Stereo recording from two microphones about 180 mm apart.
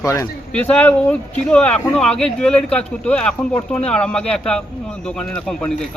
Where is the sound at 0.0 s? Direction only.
15° left (ahead or behind).